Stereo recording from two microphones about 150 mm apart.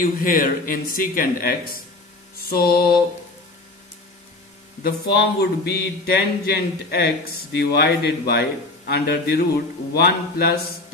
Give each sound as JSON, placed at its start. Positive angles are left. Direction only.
{"t": 0.0, "sound": "speech", "side_deg": 70}
{"t": 2.3, "sound": "mantra", "side_deg": 90}
{"t": 5.1, "sound": "speech", "side_deg": 90}